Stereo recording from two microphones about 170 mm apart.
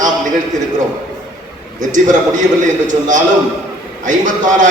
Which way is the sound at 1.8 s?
50° right (ahead or behind).